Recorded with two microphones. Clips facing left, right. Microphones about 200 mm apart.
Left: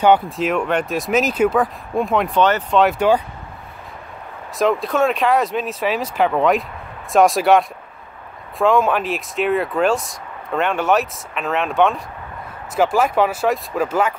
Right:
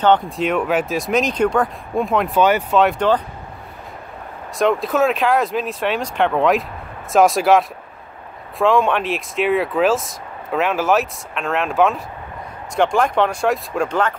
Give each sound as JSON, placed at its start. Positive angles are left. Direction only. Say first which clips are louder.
{"t": 0.0, "sound": "speech", "louder": "left 1 dB", "side_deg": 5}
{"t": 2.8, "sound": "speech", "louder": "left 2 dB", "side_deg": 5}
{"t": 4.6, "sound": "speech", "louder": "right 1 dB", "side_deg": 0}